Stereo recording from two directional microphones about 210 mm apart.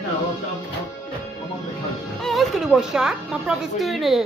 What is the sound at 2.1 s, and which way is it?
A woman's voice, centre (ahead or behind).